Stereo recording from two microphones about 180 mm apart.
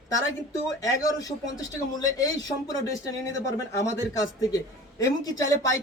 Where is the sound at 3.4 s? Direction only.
15° left (ahead or behind).